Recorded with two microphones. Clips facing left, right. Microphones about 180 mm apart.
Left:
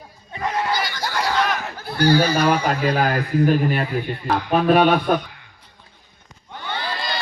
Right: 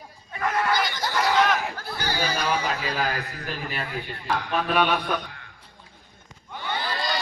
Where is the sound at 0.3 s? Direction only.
25° left (ahead or behind).